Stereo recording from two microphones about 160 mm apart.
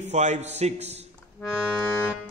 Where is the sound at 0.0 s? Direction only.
45° right (ahead or behind).